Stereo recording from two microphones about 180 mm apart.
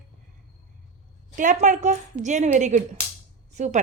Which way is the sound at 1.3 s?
45° right (ahead or behind).